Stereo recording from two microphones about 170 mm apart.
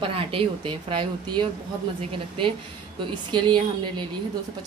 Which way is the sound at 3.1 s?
25° right (ahead or behind).